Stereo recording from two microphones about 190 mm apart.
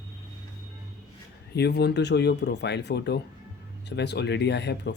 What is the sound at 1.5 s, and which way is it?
Speech, 60° left (ahead or behind).